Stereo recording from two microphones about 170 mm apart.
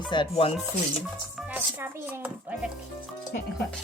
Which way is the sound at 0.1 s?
30° left (ahead or behind).